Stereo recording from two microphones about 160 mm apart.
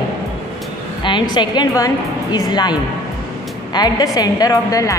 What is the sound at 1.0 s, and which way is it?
A woman's voice, 30° left (ahead or behind).